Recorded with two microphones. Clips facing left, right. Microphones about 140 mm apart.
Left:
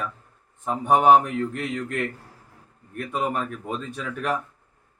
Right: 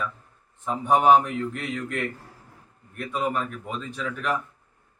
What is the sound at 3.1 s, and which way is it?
Speech, 45° left (ahead or behind).